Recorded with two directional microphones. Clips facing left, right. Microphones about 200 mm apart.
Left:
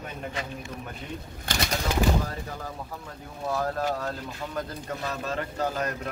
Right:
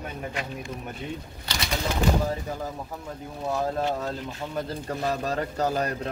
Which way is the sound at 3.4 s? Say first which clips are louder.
Right 1 dB; 20° right (ahead or behind).